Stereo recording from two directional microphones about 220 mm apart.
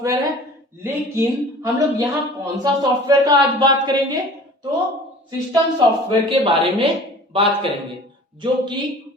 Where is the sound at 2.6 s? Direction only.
15° right (ahead or behind).